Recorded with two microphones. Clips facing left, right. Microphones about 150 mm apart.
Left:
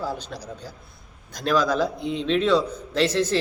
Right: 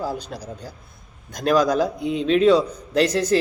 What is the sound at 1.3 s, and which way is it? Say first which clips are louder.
Speech: right 3 dB; 45° right (ahead or behind).